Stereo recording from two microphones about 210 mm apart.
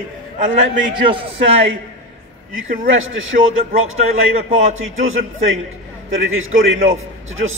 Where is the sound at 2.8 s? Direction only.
70° right (ahead or behind).